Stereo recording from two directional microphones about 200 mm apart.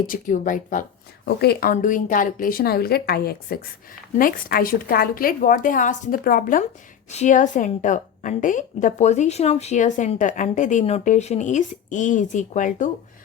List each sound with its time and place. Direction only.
0.1 s a woman's voice: 40° left (ahead or behind)